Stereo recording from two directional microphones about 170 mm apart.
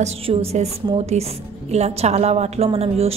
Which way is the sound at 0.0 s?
35° right (ahead or behind).